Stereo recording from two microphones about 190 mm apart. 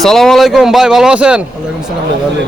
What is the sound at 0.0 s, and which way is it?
A man's voice, centre (ahead or behind).